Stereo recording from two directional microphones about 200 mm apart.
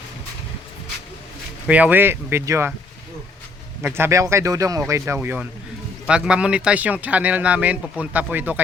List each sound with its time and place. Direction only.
1.6 s speech: 5° right (ahead or behind)
3.8 s speech: 10° right (ahead or behind)